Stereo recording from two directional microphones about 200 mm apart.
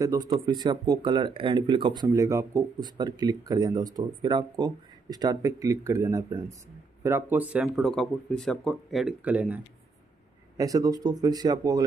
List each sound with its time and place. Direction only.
0.3 s speech: 20° right (ahead or behind); by 9.6 s 5° right (ahead or behind)
10.6 s speech: 15° right (ahead or behind)